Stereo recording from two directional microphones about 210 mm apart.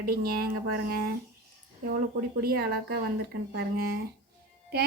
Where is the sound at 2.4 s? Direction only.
45° right (ahead or behind).